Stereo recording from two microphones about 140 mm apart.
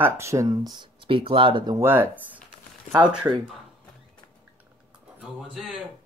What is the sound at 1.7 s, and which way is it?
Speech, 15° right (ahead or behind).